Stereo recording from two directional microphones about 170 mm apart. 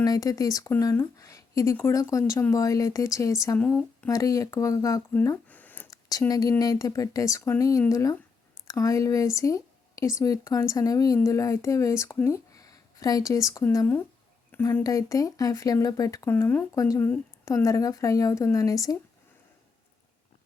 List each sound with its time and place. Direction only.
0.0 s speech: 20° left (ahead or behind)
6.1 s a woman's voice: 20° left (ahead or behind)